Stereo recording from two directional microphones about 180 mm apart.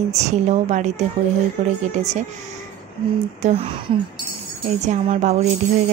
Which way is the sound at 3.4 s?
30° right (ahead or behind).